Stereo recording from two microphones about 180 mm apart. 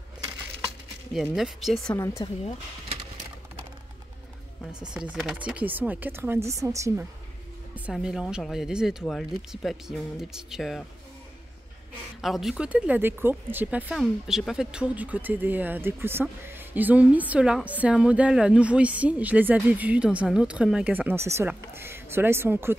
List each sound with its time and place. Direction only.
1.1 s speech: centre (ahead or behind)
2.2 s speech: 30° left (ahead or behind)
4.9 s speech: 5° right (ahead or behind)
7.7 s speech: 5° right (ahead or behind)
12.2 s speech: centre (ahead or behind)